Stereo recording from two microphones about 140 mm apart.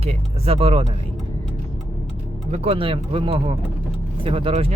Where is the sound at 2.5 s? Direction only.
45° right (ahead or behind).